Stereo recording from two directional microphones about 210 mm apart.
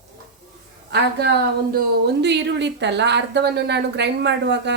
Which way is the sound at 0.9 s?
50° right (ahead or behind).